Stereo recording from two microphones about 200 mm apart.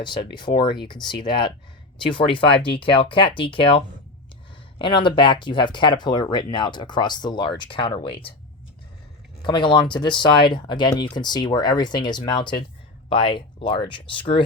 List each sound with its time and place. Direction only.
0.0 s speech: 25° left (ahead or behind)
4.8 s speech: 25° left (ahead or behind)
9.4 s speech: 25° left (ahead or behind)